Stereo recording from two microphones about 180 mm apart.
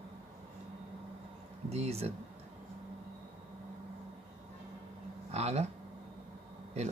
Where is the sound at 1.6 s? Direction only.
35° right (ahead or behind).